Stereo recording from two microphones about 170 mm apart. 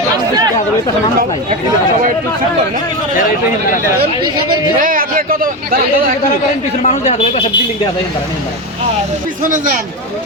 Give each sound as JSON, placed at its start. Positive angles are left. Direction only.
{"t": 4.8, "sound": "a man's voice", "side_deg": -55}
{"t": 6.8, "sound": "speech", "side_deg": 40}
{"t": 9.4, "sound": "a man's voice", "side_deg": -50}